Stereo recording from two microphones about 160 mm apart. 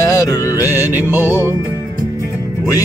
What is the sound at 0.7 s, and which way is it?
Music, 15° right (ahead or behind).